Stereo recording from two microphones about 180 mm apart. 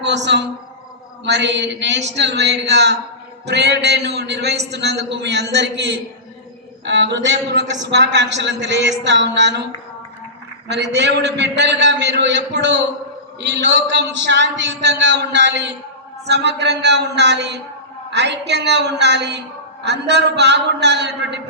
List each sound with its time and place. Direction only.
0.0 s a man's voice: 75° right (ahead or behind)
6.8 s a man's voice: 80° right
10.7 s a man's voice: 70° right (ahead or behind)